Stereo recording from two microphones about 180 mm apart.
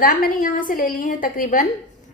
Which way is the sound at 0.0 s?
50° left (ahead or behind).